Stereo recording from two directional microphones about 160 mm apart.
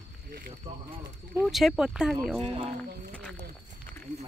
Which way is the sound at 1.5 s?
Centre (ahead or behind).